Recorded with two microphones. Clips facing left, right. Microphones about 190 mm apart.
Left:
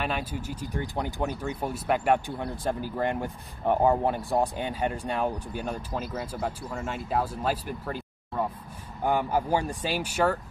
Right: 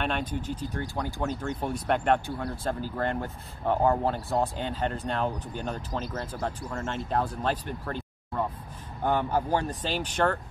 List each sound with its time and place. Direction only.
0.0 s speech: 5° left (ahead or behind)